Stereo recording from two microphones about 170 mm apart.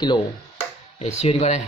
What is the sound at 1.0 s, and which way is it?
Speech, 40° left (ahead or behind).